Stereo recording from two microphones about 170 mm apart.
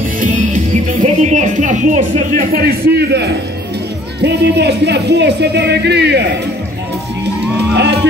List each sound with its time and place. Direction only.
0.2 s speech: 50° right (ahead or behind); by 6.2 s 80° right
7.7 s speech: 80° right